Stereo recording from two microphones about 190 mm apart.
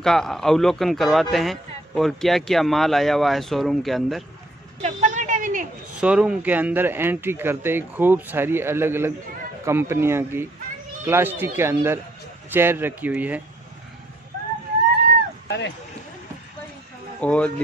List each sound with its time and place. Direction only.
0.0 s a man's voice: centre (ahead or behind)
4.8 s a sound: 40° right (ahead or behind)
5.9 s speech: 5° right (ahead or behind)
15.4 s dog: 65° left (ahead or behind)
17.2 s a man's voice: 5° left (ahead or behind)